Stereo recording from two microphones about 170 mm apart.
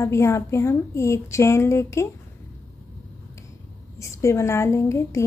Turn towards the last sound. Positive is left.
turn(degrees=15)  # may be behind; listen again after turning